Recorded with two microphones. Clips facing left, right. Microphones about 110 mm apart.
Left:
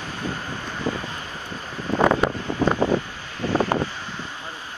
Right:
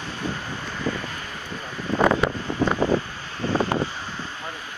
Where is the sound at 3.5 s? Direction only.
30° left (ahead or behind).